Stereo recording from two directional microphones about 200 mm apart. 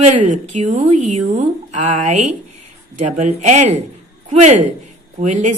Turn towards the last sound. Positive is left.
turn(degrees=-40)  # may be behind; listen again after turning